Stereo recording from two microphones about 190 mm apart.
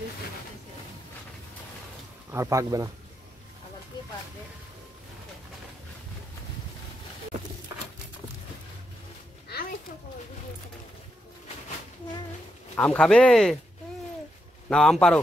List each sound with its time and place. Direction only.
2.3 s speech: 15° right (ahead or behind)
9.5 s a sound: 55° left (ahead or behind)
12.7 s speech: 5° left (ahead or behind)
14.7 s speech: 5° left (ahead or behind)